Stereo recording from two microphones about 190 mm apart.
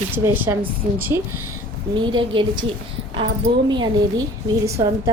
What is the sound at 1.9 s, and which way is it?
A woman's voice, 25° right (ahead or behind).